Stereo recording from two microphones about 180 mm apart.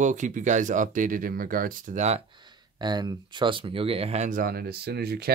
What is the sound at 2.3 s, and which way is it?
Speech, 25° right (ahead or behind).